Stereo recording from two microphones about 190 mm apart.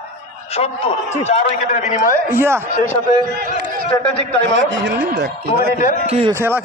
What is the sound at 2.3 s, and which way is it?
Speech, 10° right (ahead or behind).